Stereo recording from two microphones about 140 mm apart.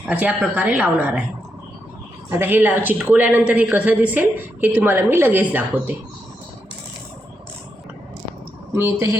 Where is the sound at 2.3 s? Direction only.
15° right (ahead or behind).